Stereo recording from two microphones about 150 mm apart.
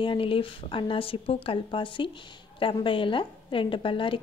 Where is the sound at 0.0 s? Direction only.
35° left (ahead or behind).